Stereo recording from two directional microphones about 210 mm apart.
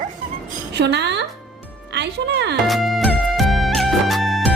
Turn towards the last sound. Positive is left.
turn(degrees=0)  # may be behind; listen again after turning